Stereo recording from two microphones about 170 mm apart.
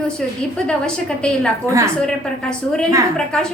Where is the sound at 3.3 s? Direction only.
5° left (ahead or behind).